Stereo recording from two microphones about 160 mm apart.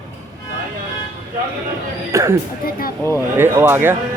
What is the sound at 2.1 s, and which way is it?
Speech, 20° right (ahead or behind).